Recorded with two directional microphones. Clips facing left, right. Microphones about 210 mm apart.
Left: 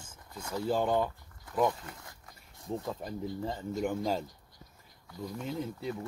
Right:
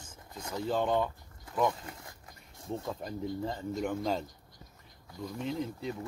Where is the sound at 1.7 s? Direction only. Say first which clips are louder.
Even; 20° right (ahead or behind).